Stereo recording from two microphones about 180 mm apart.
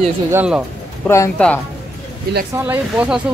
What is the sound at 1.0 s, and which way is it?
Speech, 15° left (ahead or behind).